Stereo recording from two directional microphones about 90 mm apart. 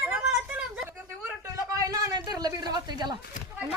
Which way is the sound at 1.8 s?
40° right (ahead or behind).